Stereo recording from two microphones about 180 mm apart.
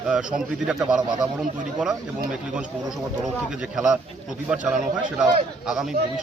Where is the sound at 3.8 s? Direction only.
5° right (ahead or behind).